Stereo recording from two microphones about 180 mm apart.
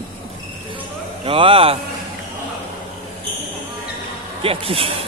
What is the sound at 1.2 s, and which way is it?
Speech, 30° right (ahead or behind).